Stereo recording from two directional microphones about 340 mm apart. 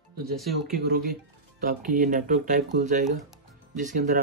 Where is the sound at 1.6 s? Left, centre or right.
Right.